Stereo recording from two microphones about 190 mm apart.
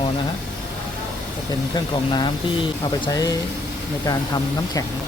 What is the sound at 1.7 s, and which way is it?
Speech, 25° left (ahead or behind).